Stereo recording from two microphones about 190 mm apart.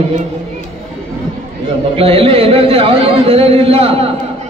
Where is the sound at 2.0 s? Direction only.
30° right (ahead or behind).